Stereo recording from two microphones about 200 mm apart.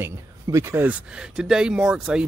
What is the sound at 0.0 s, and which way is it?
Speech, 15° right (ahead or behind).